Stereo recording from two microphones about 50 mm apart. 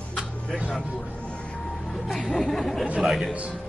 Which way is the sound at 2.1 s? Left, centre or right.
Centre.